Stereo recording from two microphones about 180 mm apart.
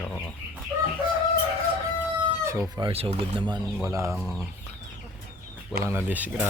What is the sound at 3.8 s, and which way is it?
Speech, 15° right (ahead or behind).